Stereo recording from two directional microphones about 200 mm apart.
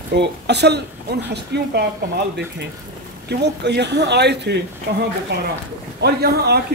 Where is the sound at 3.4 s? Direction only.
55° right (ahead or behind).